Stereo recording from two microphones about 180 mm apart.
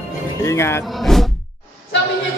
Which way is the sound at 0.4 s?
15° left (ahead or behind).